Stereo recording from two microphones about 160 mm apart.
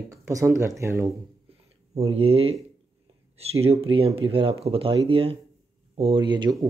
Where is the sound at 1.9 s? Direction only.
40° right (ahead or behind).